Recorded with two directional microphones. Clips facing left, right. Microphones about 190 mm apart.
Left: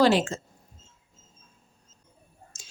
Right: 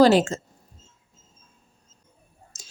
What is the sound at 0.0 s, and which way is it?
Speech, 40° right (ahead or behind).